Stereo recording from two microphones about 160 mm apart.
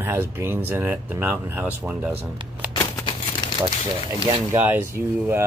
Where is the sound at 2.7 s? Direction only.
30° left (ahead or behind).